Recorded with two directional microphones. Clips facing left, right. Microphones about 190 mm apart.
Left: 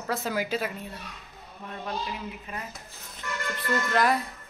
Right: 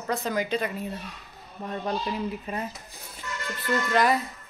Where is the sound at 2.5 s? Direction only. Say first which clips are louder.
Right 6 dB; 35° right (ahead or behind).